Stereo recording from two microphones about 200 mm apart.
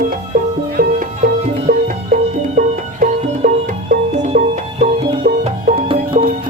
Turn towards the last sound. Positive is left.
turn(degrees=-25)  # may be behind; listen again after turning